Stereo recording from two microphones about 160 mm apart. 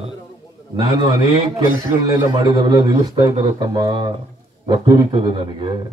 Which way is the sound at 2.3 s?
25° right (ahead or behind).